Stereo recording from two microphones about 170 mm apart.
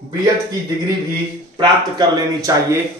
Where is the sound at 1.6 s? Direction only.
25° right (ahead or behind).